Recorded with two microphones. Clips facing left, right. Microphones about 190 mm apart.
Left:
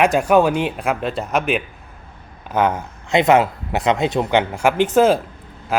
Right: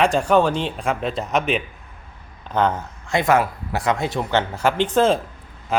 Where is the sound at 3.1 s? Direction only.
20° left (ahead or behind).